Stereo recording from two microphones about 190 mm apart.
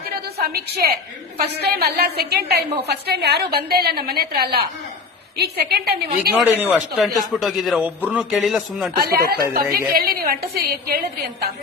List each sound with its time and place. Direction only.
0.3 s a woman's voice: 55° right (ahead or behind)
6.3 s a man's voice: 10° right (ahead or behind)
8.9 s a woman's voice: 50° right (ahead or behind)